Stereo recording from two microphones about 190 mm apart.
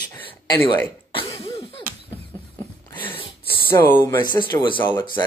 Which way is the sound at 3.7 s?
10° left (ahead or behind).